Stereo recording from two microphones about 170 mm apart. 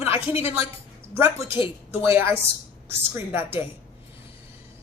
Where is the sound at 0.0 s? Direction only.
15° right (ahead or behind).